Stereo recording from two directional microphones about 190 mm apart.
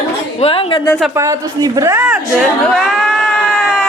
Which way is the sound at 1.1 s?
15° right (ahead or behind).